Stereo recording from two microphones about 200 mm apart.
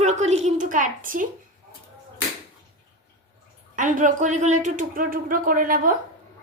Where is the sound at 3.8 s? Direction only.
40° right (ahead or behind).